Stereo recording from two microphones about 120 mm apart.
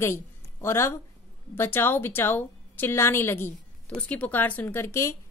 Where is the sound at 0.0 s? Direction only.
20° left (ahead or behind).